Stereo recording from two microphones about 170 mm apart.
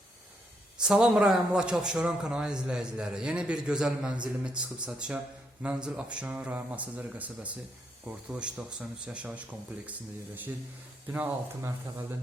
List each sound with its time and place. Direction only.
0.8 s a man's voice: 5° right (ahead or behind)
11.1 s speech: 10° right (ahead or behind)